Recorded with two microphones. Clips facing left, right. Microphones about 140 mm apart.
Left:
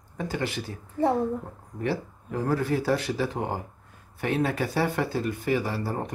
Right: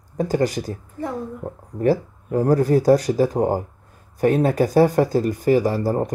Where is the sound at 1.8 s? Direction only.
40° right (ahead or behind).